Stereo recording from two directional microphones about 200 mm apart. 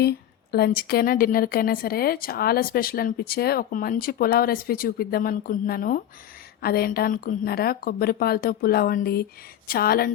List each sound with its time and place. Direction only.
0.0 s speech: 50° left (ahead or behind)